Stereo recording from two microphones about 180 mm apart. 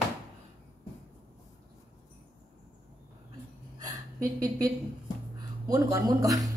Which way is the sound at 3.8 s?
20° right (ahead or behind).